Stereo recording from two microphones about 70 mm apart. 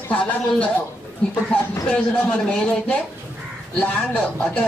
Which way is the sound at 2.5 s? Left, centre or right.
Centre.